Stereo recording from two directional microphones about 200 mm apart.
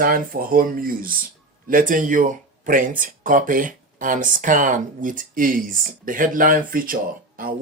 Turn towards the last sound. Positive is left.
turn(degrees=-45)  # may be behind; listen again after turning